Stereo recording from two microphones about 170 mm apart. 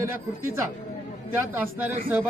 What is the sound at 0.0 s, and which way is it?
Speech, 15° right (ahead or behind).